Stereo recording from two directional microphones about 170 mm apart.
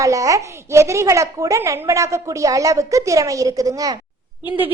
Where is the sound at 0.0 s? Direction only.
20° right (ahead or behind).